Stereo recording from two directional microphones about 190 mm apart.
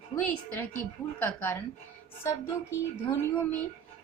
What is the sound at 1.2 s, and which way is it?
A woman's voice, 10° left (ahead or behind).